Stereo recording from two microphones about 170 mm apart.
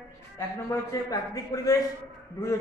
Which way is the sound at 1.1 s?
20° left (ahead or behind).